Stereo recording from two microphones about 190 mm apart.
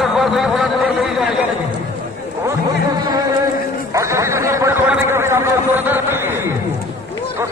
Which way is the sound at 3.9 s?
15° right (ahead or behind).